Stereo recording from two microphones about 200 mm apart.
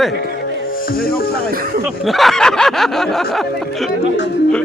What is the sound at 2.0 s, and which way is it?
Snicker, centre (ahead or behind).